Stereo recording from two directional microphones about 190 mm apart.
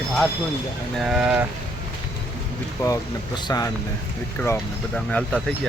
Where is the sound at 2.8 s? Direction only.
15° left (ahead or behind).